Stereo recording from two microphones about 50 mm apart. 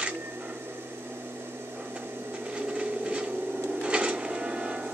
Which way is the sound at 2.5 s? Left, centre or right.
Right.